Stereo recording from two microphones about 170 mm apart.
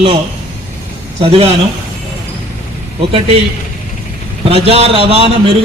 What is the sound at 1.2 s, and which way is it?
Speech, 35° right (ahead or behind).